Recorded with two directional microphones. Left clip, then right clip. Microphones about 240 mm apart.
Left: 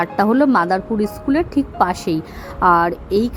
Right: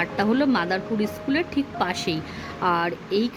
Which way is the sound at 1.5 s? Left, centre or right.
Left.